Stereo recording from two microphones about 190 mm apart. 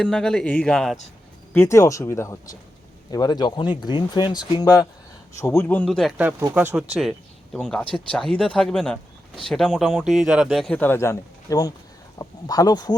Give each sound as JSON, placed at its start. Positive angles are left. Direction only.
{"t": 0.0, "sound": "speech", "side_deg": 5}
{"t": 1.5, "sound": "speech", "side_deg": 15}
{"t": 7.5, "sound": "speech", "side_deg": 5}